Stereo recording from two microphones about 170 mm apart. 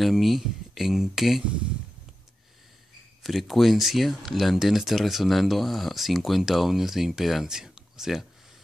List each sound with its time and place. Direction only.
0.0 s speech: centre (ahead or behind)
3.2 s speech: centre (ahead or behind)